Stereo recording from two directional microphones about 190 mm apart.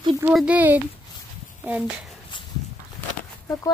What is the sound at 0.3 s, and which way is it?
Speech, 5° right (ahead or behind).